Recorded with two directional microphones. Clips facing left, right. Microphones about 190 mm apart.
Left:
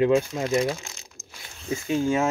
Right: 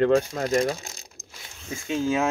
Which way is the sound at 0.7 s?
40° right (ahead or behind).